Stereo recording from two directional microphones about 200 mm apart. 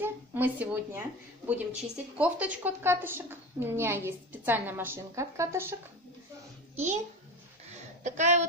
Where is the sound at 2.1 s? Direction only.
5° right (ahead or behind).